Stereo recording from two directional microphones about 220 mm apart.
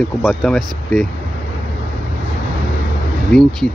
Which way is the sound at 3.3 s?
Centre (ahead or behind).